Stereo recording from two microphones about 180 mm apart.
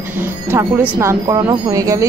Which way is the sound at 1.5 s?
20° right (ahead or behind).